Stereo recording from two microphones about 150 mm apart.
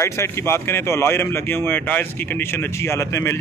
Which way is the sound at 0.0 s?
20° left (ahead or behind).